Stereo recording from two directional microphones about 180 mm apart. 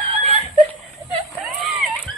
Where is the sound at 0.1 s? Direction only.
35° right (ahead or behind).